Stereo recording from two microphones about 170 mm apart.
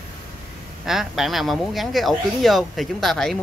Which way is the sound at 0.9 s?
Centre (ahead or behind).